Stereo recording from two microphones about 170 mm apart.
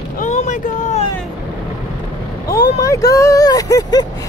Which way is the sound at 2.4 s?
70° left (ahead or behind).